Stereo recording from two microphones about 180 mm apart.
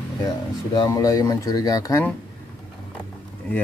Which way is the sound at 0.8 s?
20° left (ahead or behind).